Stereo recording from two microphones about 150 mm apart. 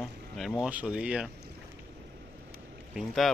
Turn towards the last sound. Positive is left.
turn(degrees=0)  # may be behind; listen again after turning